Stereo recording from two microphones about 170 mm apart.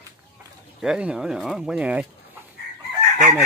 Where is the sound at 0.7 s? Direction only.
5° right (ahead or behind).